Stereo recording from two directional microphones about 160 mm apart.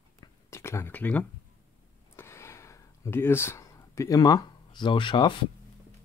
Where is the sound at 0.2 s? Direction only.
15° left (ahead or behind).